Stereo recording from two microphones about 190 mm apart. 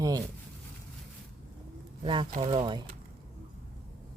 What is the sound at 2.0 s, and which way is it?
Speech, 25° right (ahead or behind).